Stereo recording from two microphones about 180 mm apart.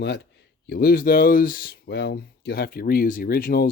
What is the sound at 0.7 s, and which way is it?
Speech, 55° left (ahead or behind).